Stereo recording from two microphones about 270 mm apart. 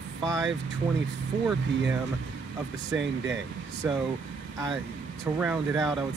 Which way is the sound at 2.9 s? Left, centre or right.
Right.